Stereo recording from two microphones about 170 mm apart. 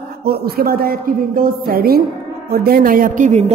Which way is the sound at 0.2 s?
65° right (ahead or behind).